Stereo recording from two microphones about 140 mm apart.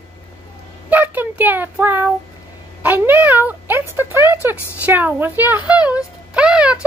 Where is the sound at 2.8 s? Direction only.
15° right (ahead or behind).